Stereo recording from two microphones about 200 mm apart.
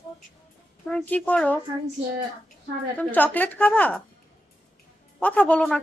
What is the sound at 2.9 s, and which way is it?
A woman's voice, 10° left (ahead or behind).